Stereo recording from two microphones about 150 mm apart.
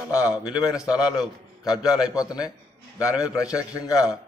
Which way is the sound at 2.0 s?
25° left (ahead or behind).